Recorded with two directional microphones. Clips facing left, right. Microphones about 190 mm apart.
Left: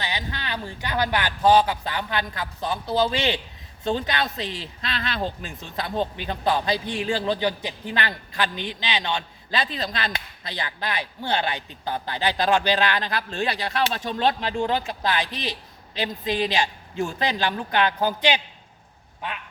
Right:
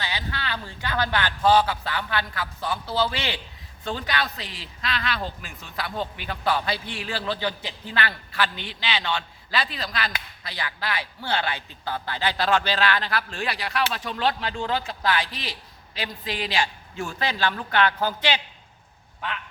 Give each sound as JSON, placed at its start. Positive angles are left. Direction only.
{"t": 0.0, "sound": "a man's voice", "side_deg": 20}